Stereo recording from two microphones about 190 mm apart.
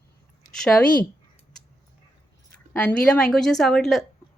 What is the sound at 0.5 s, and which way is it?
Speech, 5° left (ahead or behind).